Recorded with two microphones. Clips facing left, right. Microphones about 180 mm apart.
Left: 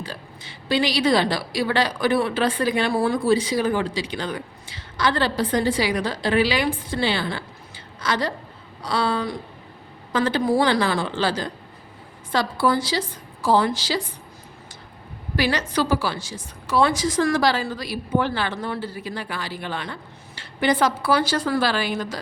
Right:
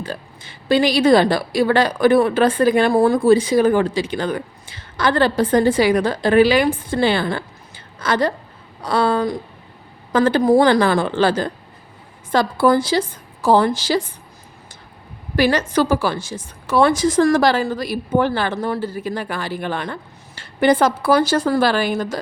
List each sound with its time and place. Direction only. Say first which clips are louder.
0.0 s a woman's voice: right 6 dB; 50° right (ahead or behind)
15.4 s a woman's voice: right 6 dB; 50° right (ahead or behind)